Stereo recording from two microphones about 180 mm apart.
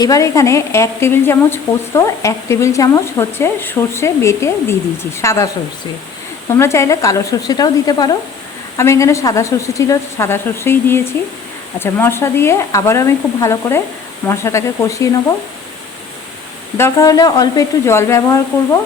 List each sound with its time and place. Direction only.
0.0 s a woman's voice: 20° left (ahead or behind)
6.5 s a woman's voice: 15° left (ahead or behind)
16.7 s a woman's voice: 15° left (ahead or behind)